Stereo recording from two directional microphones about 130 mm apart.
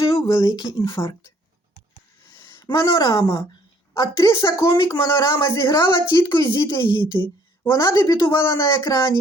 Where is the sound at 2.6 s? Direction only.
25° left (ahead or behind).